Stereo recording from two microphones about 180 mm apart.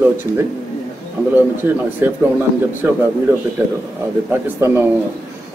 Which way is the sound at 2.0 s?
15° right (ahead or behind).